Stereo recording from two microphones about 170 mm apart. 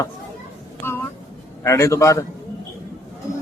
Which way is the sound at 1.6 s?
20° left (ahead or behind).